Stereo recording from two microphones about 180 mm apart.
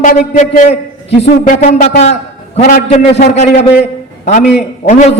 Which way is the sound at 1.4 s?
45° left (ahead or behind).